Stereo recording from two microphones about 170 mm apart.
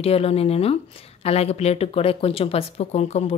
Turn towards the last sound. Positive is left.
turn(degrees=40)  # may be behind; listen again after turning